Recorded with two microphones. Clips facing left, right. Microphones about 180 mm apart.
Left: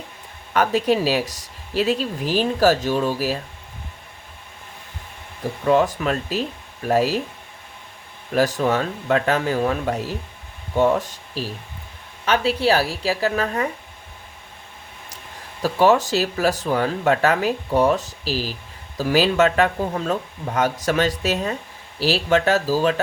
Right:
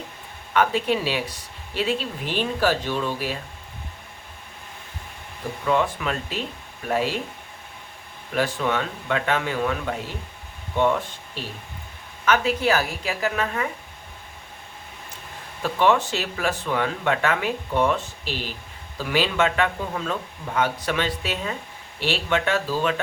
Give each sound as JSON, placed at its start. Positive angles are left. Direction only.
{"t": 0.5, "sound": "speech", "side_deg": 40}
{"t": 5.6, "sound": "speech", "side_deg": 40}
{"t": 8.4, "sound": "speech", "side_deg": 40}
{"t": 15.6, "sound": "speech", "side_deg": 40}